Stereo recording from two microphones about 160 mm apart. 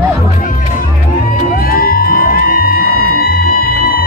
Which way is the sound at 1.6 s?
65° left (ahead or behind).